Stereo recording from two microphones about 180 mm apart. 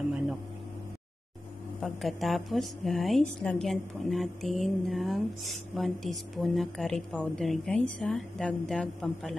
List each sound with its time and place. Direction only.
1.8 s a woman's voice: centre (ahead or behind)